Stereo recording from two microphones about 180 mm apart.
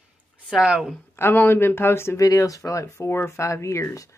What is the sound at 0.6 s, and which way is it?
Speech, 5° right (ahead or behind).